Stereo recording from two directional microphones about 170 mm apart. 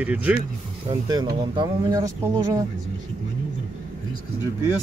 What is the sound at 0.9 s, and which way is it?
Speech, 25° right (ahead or behind).